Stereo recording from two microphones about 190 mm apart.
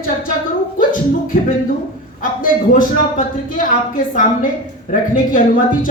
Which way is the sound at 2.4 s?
45° left (ahead or behind).